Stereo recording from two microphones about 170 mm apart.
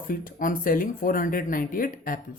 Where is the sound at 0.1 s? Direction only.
55° left (ahead or behind).